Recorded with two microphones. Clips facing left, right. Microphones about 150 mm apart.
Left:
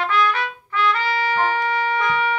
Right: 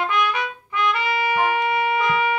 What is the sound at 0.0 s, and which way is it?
Trumpet, 15° right (ahead or behind).